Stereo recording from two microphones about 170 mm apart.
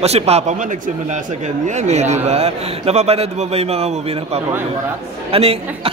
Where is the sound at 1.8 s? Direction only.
40° right (ahead or behind).